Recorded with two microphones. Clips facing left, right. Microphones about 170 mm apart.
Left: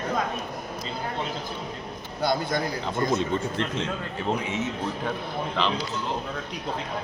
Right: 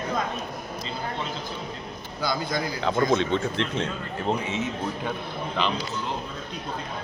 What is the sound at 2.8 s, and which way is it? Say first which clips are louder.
Speech: right 3 dB; 90° right.